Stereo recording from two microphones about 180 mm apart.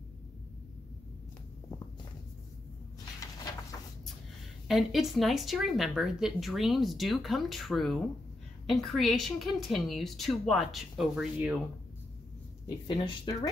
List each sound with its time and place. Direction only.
3.2 s a sound: 20° left (ahead or behind)
4.6 s speech: centre (ahead or behind)
12.6 s speech: 25° left (ahead or behind)